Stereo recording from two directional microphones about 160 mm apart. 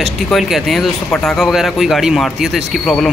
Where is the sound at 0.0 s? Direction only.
Centre (ahead or behind).